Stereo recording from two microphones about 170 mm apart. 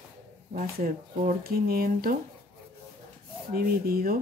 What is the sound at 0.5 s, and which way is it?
Speech, 55° right (ahead or behind).